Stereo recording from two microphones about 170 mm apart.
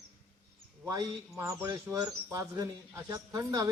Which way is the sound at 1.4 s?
15° right (ahead or behind).